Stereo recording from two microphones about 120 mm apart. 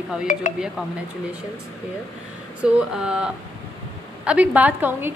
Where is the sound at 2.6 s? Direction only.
10° right (ahead or behind).